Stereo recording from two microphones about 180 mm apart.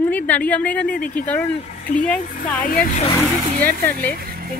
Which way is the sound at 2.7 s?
50° left (ahead or behind).